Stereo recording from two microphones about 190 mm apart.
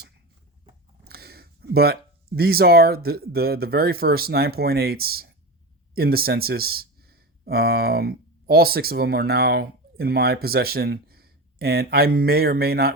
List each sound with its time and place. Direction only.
1.0 s speech: 55° right (ahead or behind)